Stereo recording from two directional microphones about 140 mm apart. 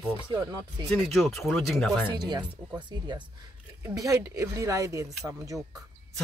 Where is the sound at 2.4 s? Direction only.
10° right (ahead or behind).